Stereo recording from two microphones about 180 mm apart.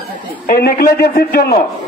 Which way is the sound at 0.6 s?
55° left (ahead or behind).